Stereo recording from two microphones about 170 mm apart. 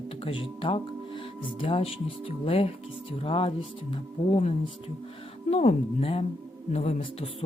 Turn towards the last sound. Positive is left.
turn(degrees=35)  # may be behind; listen again after turning